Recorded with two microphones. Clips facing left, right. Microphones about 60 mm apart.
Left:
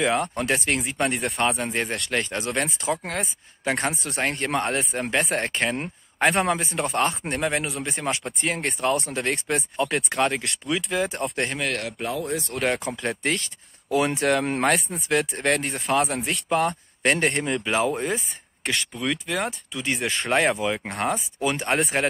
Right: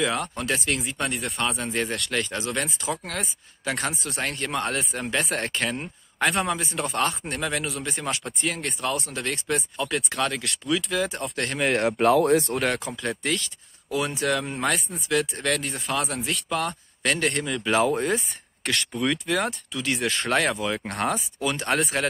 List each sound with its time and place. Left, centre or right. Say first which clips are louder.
0.0 s speech: left 3 dB; left
1.1 s speech: left 3 dB; left
1.4 s speech: left 2 dB; left
12.0 s speech: right 9 dB; right
12.8 s speech: left 2 dB; left
13.9 s speech: left 4 dB; left
15.0 s speech: left 1 dB; left
17.6 s speech: right 2 dB; centre
19.7 s speech: even; centre
20.1 s speech: left 3 dB; centre
21.4 s speech: left 2 dB; left